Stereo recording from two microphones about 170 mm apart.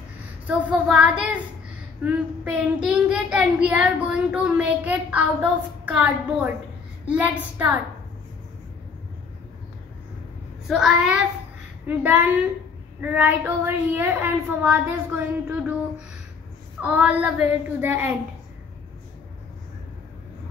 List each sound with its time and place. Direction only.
0.5 s child singing: 5° right (ahead or behind)
10.7 s child singing: centre (ahead or behind)
16.8 s child singing: 10° right (ahead or behind)